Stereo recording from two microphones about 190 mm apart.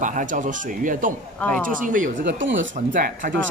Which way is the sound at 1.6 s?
45° right (ahead or behind).